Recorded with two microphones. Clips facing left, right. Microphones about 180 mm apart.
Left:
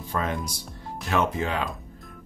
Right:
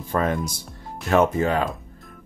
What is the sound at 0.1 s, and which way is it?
Speech, 50° right (ahead or behind).